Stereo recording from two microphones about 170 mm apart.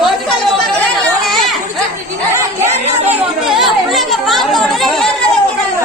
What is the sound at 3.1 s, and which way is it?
Chatter, centre (ahead or behind).